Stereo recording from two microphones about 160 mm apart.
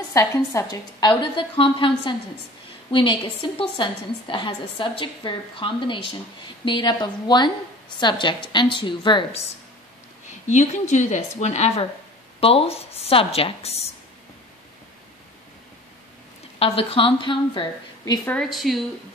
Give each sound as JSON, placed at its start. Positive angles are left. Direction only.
{"t": 0.1, "sound": "a woman's voice", "side_deg": 20}
{"t": 10.5, "sound": "a woman's voice", "side_deg": 45}
{"t": 16.5, "sound": "a woman's voice", "side_deg": 35}
{"t": 18.2, "sound": "speech", "side_deg": 5}